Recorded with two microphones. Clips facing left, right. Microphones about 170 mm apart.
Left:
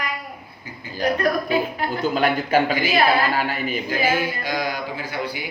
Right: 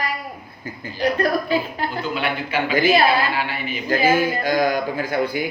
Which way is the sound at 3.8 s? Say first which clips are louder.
Right 6 dB; 45° right (ahead or behind).